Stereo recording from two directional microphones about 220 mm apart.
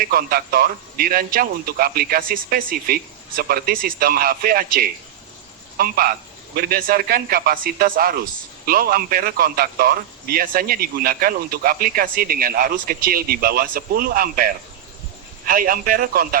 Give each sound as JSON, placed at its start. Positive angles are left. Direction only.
{"t": 0.0, "sound": "a man's voice", "side_deg": -40}